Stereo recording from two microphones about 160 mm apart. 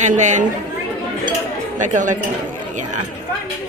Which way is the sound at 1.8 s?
50° right (ahead or behind).